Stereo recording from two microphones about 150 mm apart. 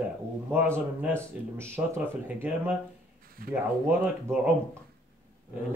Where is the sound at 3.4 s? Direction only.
75° right (ahead or behind).